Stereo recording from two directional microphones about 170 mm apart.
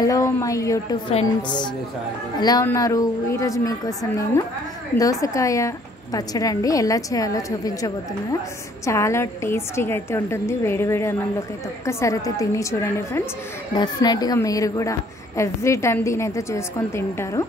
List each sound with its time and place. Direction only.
0.0 s a woman's voice: 20° left (ahead or behind)
13.7 s a woman's voice: 25° left (ahead or behind)